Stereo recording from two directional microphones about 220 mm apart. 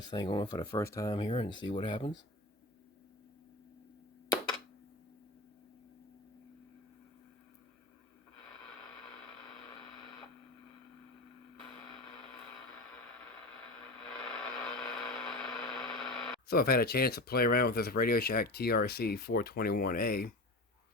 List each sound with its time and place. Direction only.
0.1 s speech: 20° left (ahead or behind)
13.8 s a sound: 5° left (ahead or behind)
16.5 s speech: 45° left (ahead or behind)